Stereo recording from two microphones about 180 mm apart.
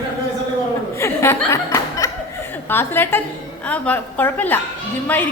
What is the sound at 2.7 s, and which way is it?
A woman's voice, 10° left (ahead or behind).